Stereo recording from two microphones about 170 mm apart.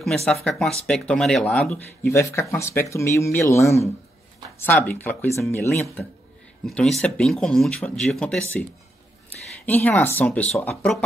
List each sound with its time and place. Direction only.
0.0 s speech: centre (ahead or behind)
6.6 s speech: 5° left (ahead or behind)
9.7 s speech: 10° left (ahead or behind)